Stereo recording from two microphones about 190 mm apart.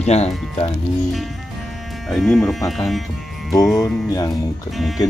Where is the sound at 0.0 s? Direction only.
35° left (ahead or behind).